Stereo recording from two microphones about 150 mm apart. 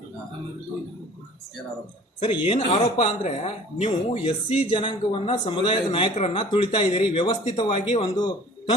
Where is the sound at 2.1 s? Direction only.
45° left (ahead or behind).